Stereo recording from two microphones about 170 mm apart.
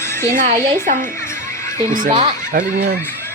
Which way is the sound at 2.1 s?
25° right (ahead or behind).